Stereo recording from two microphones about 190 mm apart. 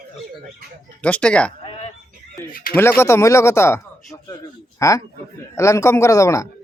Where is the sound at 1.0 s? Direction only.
5° left (ahead or behind).